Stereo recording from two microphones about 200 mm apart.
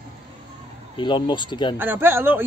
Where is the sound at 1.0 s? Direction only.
25° left (ahead or behind).